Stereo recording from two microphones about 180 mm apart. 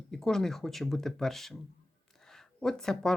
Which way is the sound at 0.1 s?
Centre (ahead or behind).